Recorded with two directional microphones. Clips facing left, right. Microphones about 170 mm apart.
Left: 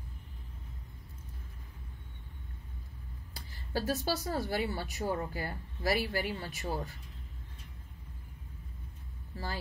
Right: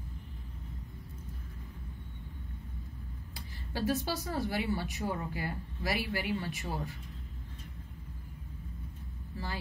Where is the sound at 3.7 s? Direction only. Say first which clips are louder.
Even; 30° left (ahead or behind).